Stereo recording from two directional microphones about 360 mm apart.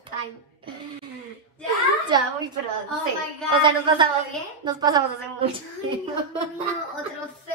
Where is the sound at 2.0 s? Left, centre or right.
Centre.